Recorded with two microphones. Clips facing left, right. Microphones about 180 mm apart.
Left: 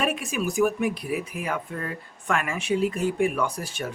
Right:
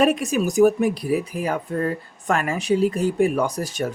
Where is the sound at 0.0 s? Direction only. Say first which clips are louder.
Right 7 dB; 40° right (ahead or behind).